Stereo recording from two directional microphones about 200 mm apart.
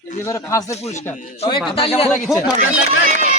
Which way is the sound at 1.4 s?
25° left (ahead or behind).